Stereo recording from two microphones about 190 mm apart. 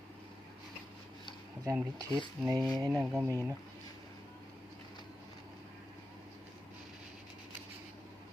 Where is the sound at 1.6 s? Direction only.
15° right (ahead or behind).